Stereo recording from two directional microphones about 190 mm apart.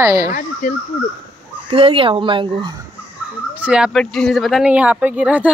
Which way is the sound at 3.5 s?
5° right (ahead or behind).